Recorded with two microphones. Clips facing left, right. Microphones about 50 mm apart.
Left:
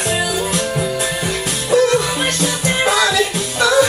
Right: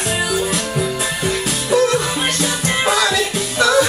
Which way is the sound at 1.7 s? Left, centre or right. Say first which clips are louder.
Left 2 dB; centre.